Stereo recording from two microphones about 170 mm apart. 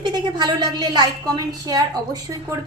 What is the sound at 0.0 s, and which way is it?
A woman's voice, 25° right (ahead or behind).